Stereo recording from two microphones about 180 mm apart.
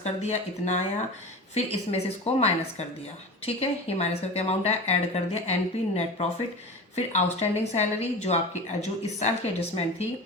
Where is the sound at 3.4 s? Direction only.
35° left (ahead or behind).